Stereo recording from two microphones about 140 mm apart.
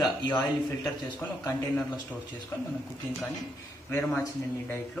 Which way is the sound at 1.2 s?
15° left (ahead or behind).